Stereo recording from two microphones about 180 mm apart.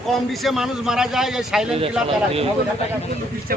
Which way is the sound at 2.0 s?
30° right (ahead or behind).